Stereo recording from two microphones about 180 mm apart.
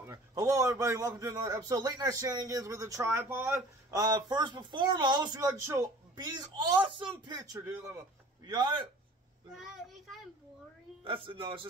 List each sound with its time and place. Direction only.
0.0 s a man's voice: 20° right (ahead or behind)
8.5 s a man's voice: 25° right (ahead or behind)
9.6 s child singing: centre (ahead or behind)
11.1 s a man's voice: 30° right (ahead or behind)